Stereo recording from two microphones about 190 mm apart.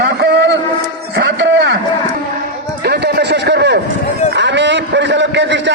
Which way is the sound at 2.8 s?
60° right (ahead or behind).